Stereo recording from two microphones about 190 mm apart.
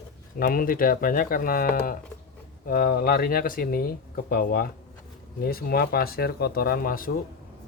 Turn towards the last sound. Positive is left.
turn(degrees=50)  # may be behind; listen again after turning